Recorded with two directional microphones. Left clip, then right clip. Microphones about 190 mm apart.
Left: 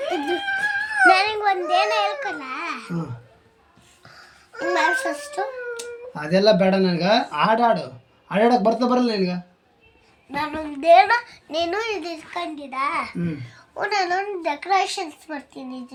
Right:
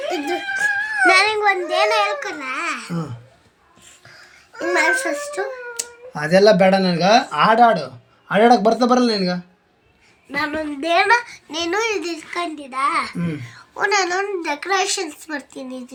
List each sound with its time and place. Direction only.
0.1 s a sound: 5° left (ahead or behind)
1.0 s a child's voice: 15° left (ahead or behind)
4.6 s speech: 5° left (ahead or behind)
5.7 s speech: 25° right (ahead or behind)
10.3 s a child's voice: 10° left (ahead or behind)